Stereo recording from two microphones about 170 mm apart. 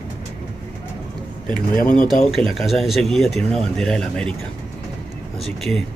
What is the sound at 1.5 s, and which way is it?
Speech, 55° left (ahead or behind).